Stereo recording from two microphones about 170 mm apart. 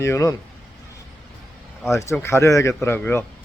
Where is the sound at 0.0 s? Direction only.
15° left (ahead or behind).